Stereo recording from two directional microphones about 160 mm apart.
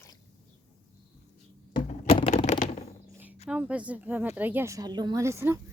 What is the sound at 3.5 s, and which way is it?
Speech, 10° right (ahead or behind).